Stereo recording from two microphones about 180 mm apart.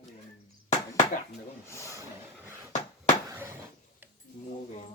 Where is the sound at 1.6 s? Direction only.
15° left (ahead or behind).